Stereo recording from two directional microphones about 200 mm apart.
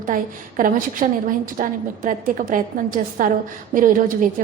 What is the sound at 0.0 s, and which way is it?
A woman's voice, 40° right (ahead or behind).